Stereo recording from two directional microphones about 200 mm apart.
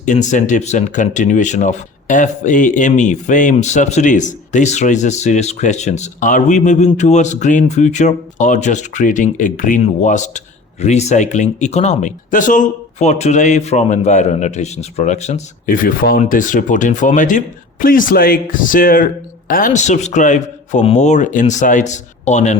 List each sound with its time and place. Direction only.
0.0 s speech: 35° left (ahead or behind)